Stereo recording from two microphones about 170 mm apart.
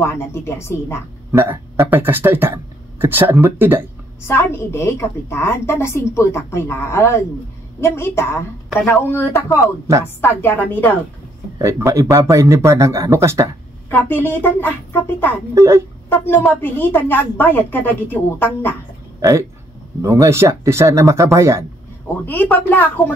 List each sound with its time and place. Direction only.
0.0 s a woman's voice: 15° left (ahead or behind)
1.3 s speech: 15° right (ahead or behind)
4.3 s a woman's voice: 15° left (ahead or behind)
11.5 s speech: 15° right (ahead or behind)
13.8 s a woman's voice: 15° left (ahead or behind)
15.5 s speech: 15° right (ahead or behind)
16.1 s a woman's voice: 10° left (ahead or behind)
20.0 s speech: 20° right (ahead or behind)
22.2 s a woman's voice: 10° left (ahead or behind)